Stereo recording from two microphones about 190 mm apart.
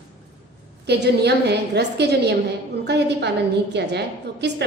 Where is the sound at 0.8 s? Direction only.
60° right (ahead or behind).